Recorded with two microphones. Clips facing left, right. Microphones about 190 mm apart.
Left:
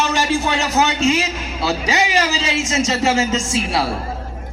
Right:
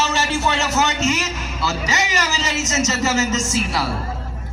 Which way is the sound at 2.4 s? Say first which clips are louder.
Left 2 dB; 55° left (ahead or behind).